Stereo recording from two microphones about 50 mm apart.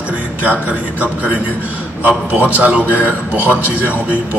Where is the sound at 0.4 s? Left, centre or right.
Right.